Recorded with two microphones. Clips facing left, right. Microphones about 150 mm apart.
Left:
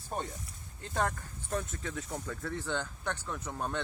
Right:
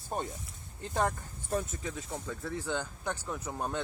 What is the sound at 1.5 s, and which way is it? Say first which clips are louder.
Speech: right 2 dB; 10° right (ahead or behind).